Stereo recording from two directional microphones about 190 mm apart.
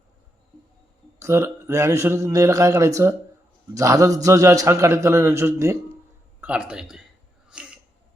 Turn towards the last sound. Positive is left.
turn(degrees=-5)  # may be behind; listen again after turning